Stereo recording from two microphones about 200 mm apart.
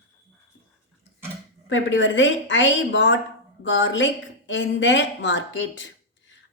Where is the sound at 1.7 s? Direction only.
70° left (ahead or behind).